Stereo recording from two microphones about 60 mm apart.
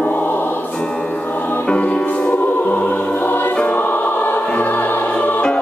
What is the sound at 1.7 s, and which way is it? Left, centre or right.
Music, centre.